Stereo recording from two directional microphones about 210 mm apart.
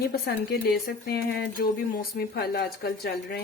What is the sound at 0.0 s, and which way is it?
Speech, 50° left (ahead or behind).